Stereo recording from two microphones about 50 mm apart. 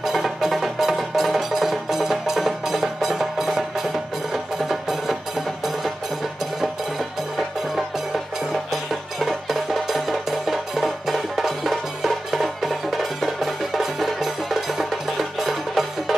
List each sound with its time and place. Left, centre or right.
0.0 s music: centre
9.2 s music: centre